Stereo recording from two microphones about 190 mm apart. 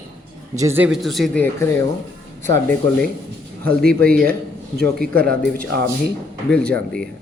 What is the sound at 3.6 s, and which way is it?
Speech, 50° right (ahead or behind).